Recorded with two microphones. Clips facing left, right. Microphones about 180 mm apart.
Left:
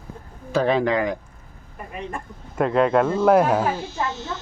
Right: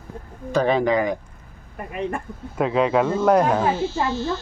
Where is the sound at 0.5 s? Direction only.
Centre (ahead or behind).